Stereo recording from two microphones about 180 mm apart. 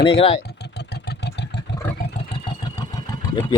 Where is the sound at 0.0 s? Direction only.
30° left (ahead or behind).